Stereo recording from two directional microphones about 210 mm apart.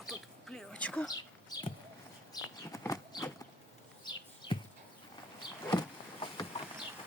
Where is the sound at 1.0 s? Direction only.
20° left (ahead or behind).